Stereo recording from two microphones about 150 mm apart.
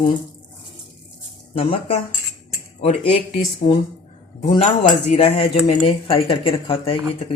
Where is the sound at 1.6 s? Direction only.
40° left (ahead or behind).